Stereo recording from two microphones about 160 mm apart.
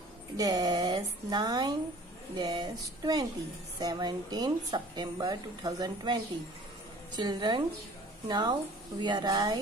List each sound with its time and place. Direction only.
0.4 s speech: 20° right (ahead or behind)
7.2 s speech: 25° right (ahead or behind)